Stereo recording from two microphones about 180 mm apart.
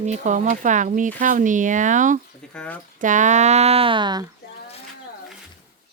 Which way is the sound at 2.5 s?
5° left (ahead or behind).